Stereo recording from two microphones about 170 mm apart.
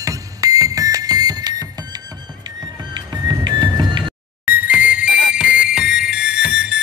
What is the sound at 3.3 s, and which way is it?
Music, 25° right (ahead or behind).